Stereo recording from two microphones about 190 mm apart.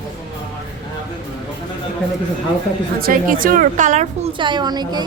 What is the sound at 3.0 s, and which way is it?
A woman's voice, 45° right (ahead or behind).